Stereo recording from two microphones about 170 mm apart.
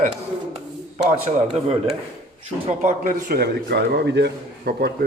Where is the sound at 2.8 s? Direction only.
50° right (ahead or behind).